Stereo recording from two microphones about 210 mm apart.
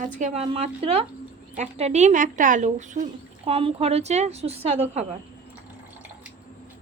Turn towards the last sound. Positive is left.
turn(degrees=-30)  # may be behind; listen again after turning